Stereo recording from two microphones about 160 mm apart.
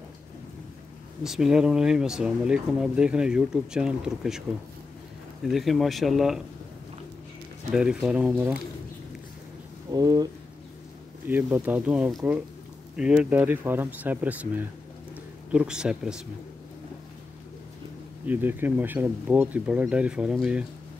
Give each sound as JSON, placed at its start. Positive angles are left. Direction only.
{"t": 1.2, "sound": "speech", "side_deg": 0}
{"t": 5.4, "sound": "speech", "side_deg": 0}
{"t": 7.7, "sound": "speech", "side_deg": -5}
{"t": 9.8, "sound": "speech", "side_deg": -25}
{"t": 11.2, "sound": "speech", "side_deg": -10}
{"t": 18.2, "sound": "speech", "side_deg": -10}